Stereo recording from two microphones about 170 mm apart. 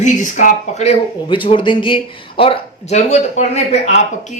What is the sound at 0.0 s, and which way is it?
A woman's voice, 45° left (ahead or behind).